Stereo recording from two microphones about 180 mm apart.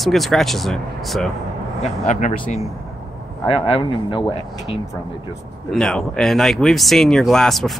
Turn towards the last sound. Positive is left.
turn(degrees=0)  # may be behind; listen again after turning